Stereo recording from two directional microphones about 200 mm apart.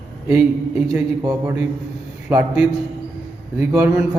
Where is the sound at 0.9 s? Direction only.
15° right (ahead or behind).